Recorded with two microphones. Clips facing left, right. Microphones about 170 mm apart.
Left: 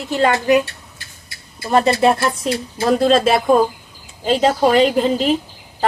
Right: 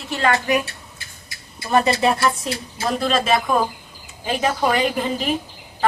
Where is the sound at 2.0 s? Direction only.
50° left (ahead or behind).